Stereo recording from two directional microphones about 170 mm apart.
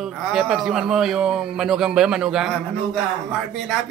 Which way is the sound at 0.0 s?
Centre (ahead or behind).